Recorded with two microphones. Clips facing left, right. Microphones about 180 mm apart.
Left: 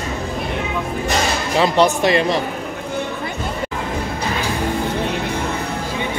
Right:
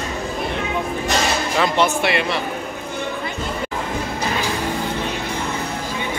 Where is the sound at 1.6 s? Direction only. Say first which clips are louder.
Left 4 dB; 35° left (ahead or behind).